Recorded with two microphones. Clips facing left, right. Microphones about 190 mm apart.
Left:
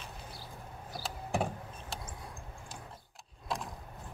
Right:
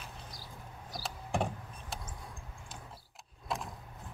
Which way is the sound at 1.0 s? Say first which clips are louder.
Left 1 dB; centre (ahead or behind).